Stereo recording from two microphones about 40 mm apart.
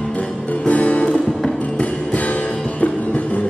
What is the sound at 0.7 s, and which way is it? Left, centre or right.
Music, left.